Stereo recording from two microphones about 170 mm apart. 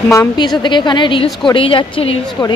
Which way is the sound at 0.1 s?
20° left (ahead or behind).